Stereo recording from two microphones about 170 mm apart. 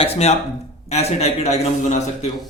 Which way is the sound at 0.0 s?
35° left (ahead or behind).